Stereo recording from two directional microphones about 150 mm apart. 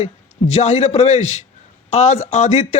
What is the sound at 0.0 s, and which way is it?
A man's voice, 45° left (ahead or behind).